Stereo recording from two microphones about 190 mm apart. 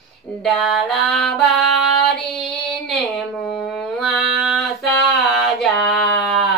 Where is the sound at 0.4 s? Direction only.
Centre (ahead or behind).